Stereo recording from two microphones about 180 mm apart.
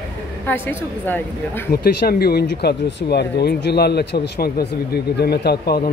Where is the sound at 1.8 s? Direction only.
60° left (ahead or behind).